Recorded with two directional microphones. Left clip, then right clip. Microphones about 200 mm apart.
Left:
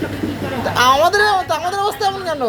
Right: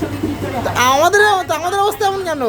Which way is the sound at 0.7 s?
35° right (ahead or behind).